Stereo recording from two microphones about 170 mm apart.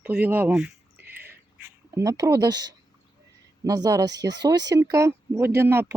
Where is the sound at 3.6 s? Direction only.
20° right (ahead or behind).